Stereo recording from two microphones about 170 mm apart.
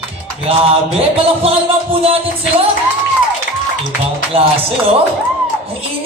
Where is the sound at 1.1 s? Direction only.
35° right (ahead or behind).